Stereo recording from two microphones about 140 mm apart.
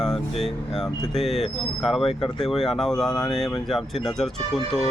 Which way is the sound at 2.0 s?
40° left (ahead or behind).